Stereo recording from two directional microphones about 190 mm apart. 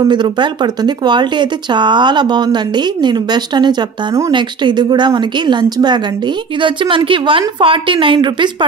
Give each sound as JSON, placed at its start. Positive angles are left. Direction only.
{"t": 0.0, "sound": "speech", "side_deg": -25}